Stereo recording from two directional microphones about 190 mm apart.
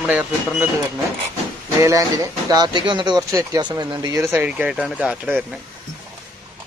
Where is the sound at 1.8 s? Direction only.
15° right (ahead or behind).